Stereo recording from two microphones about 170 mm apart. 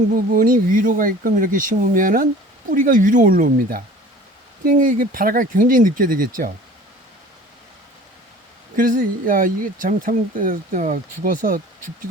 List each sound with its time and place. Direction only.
0.1 s speech: 55° right (ahead or behind)
8.7 s speech: 55° right (ahead or behind)